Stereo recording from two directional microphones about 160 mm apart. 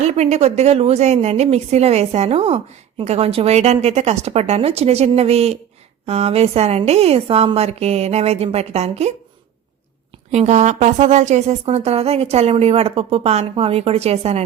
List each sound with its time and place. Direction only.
0.0 s a woman's voice: 45° right (ahead or behind)
10.3 s a woman's voice: 45° right (ahead or behind)